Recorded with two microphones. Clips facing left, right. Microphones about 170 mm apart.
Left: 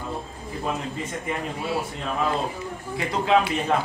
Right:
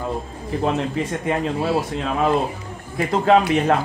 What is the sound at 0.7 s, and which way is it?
A man's voice, 75° right (ahead or behind).